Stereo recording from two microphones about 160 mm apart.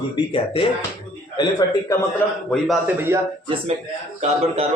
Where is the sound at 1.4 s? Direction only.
25° left (ahead or behind).